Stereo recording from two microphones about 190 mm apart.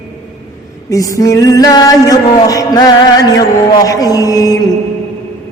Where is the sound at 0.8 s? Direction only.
15° left (ahead or behind).